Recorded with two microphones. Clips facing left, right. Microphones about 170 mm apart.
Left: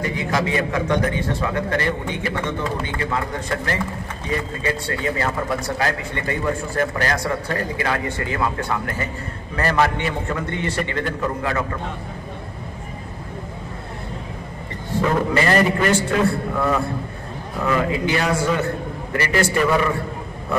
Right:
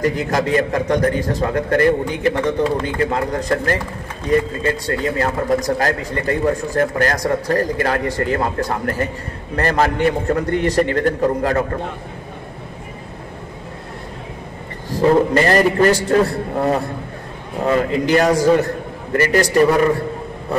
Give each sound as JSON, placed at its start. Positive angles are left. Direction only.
{"t": 0.3, "sound": "a man's voice", "side_deg": -45}
{"t": 14.9, "sound": "a man's voice", "side_deg": -35}